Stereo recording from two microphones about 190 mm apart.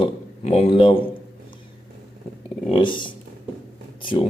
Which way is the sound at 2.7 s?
25° left (ahead or behind).